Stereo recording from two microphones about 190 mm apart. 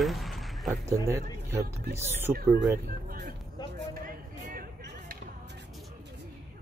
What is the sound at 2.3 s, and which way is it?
Speech, 55° right (ahead or behind).